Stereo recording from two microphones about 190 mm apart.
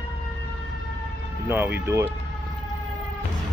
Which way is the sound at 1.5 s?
10° right (ahead or behind).